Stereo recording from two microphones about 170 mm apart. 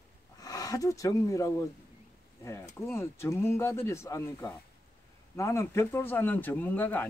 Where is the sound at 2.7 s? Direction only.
15° left (ahead or behind).